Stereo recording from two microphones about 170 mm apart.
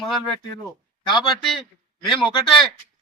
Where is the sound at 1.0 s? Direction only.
25° left (ahead or behind).